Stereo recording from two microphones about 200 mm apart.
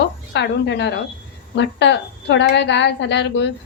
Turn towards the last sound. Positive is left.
turn(degrees=60)  # may be behind; listen again after turning